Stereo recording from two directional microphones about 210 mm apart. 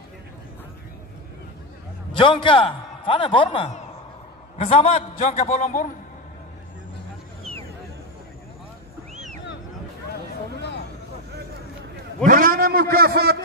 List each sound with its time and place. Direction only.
2.1 s a man's voice: 25° left (ahead or behind); by 5.9 s 40° left (ahead or behind)
9.1 s vehicle: 35° right (ahead or behind)
12.3 s a man's voice: 40° right (ahead or behind)